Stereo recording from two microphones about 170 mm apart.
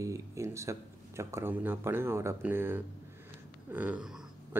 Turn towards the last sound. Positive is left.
turn(degrees=-5)  # may be behind; listen again after turning